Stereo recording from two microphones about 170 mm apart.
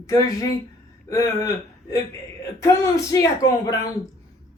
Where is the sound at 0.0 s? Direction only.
20° left (ahead or behind).